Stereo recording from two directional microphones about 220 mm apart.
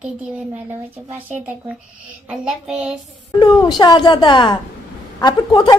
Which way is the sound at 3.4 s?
20° left (ahead or behind).